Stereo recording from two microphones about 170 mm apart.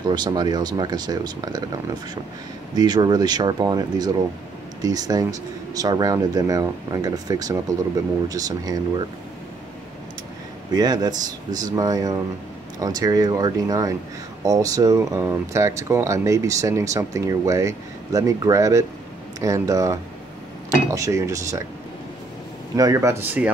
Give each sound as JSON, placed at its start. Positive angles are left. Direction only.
{"t": 0.0, "sound": "speech", "side_deg": -25}
{"t": 2.7, "sound": "speech", "side_deg": -25}
{"t": 10.7, "sound": "speech", "side_deg": -25}
{"t": 22.8, "sound": "speech", "side_deg": -20}